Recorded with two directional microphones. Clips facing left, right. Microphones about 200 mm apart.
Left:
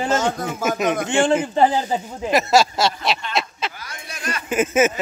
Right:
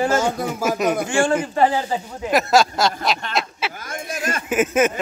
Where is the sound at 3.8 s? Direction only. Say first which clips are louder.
Right 7 dB; 50° right (ahead or behind).